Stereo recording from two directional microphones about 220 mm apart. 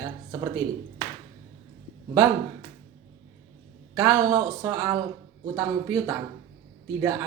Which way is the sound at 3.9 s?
15° right (ahead or behind).